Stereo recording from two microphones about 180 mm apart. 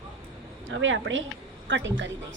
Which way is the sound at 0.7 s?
90° right.